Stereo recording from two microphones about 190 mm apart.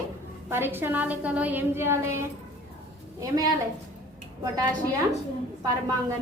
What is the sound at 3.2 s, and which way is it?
Speech, 20° right (ahead or behind).